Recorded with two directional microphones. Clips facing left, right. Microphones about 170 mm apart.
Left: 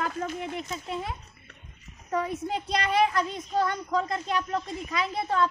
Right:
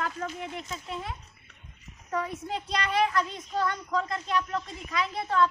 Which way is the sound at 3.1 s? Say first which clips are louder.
Left 1 dB; 30° left (ahead or behind).